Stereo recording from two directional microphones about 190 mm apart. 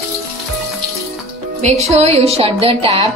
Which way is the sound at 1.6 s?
35° right (ahead or behind).